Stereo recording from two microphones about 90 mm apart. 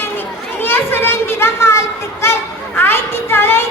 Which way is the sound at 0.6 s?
25° left (ahead or behind).